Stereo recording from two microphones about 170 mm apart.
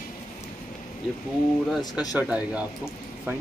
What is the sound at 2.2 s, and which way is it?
Speech, 10° right (ahead or behind).